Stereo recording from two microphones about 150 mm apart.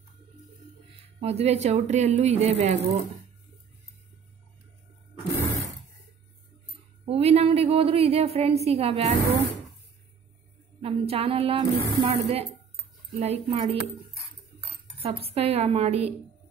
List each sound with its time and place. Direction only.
1.2 s speech: 45° right (ahead or behind)
7.1 s a woman's voice: 45° right (ahead or behind)
10.8 s a woman's voice: 40° right (ahead or behind)
15.0 s speech: 40° right (ahead or behind)